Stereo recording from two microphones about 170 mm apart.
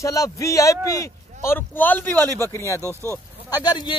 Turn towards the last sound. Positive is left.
turn(degrees=25)  # may be behind; listen again after turning